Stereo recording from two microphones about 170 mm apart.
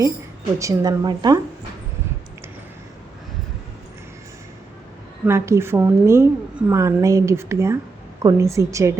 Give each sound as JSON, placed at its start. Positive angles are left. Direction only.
{"t": 0.6, "sound": "a woman's voice", "side_deg": -20}
{"t": 5.2, "sound": "a woman's voice", "side_deg": -15}